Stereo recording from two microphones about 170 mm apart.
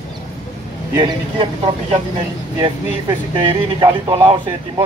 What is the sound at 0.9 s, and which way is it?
Speech, 25° right (ahead or behind).